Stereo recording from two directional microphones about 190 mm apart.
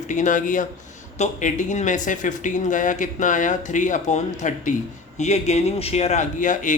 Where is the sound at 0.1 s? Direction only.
40° left (ahead or behind).